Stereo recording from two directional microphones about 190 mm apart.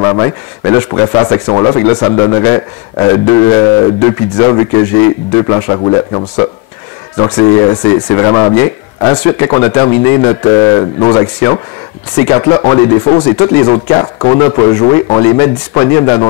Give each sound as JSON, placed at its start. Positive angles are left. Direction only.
{"t": 0.0, "sound": "speech", "side_deg": 20}